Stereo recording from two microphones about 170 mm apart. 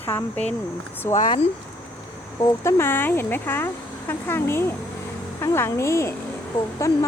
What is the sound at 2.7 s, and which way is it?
Speech, 15° left (ahead or behind).